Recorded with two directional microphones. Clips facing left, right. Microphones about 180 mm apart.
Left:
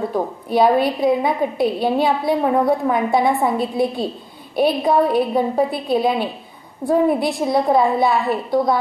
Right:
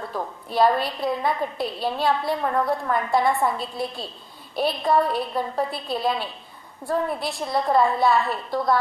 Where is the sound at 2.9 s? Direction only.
5° left (ahead or behind).